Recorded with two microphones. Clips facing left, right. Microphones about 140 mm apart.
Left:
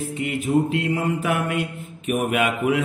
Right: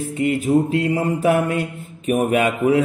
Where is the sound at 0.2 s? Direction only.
40° right (ahead or behind).